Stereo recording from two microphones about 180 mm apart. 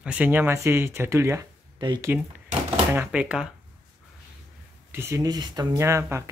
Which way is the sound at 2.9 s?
10° right (ahead or behind).